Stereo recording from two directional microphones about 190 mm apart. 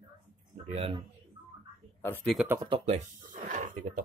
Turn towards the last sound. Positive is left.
turn(degrees=-45)  # may be behind; listen again after turning